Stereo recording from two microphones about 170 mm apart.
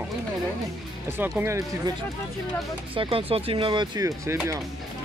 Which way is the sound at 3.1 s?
35° right (ahead or behind).